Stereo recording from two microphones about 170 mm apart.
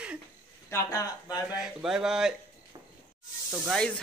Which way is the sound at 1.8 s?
5° right (ahead or behind).